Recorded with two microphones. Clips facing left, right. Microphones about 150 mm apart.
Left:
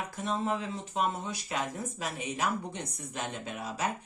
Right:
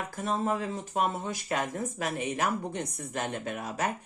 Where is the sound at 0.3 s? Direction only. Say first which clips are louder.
Right 2 dB; 45° right (ahead or behind).